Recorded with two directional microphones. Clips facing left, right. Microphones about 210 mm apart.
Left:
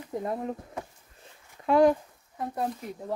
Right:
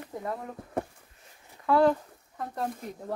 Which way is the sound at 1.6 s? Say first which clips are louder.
Left 2 dB; 15° left (ahead or behind).